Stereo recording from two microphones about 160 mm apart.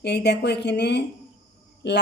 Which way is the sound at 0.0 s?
90° left.